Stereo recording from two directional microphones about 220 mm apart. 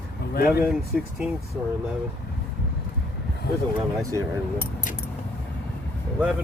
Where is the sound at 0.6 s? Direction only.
Centre (ahead or behind).